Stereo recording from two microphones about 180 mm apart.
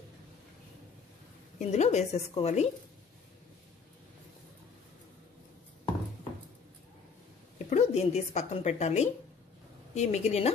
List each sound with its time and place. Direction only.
1.6 s a woman's voice: 40° left (ahead or behind)
7.5 s a woman's voice: 40° left (ahead or behind)